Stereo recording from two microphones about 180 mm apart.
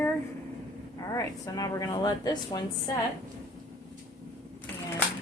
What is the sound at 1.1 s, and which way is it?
A woman's voice, 15° left (ahead or behind).